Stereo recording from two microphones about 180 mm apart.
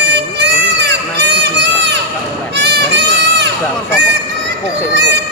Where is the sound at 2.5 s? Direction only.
75° right (ahead or behind).